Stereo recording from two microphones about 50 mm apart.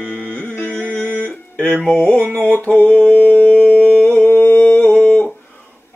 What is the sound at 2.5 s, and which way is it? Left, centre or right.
Mantra, left.